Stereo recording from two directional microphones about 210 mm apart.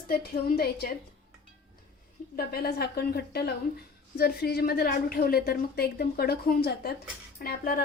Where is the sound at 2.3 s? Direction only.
45° left (ahead or behind).